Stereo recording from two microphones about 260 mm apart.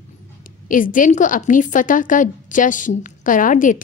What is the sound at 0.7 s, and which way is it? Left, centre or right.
A woman's voice, left.